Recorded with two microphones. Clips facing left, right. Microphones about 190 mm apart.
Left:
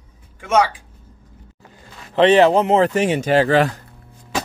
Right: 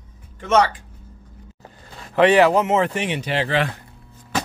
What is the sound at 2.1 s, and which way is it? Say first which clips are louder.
Speech: left 2 dB; 25° left (ahead or behind).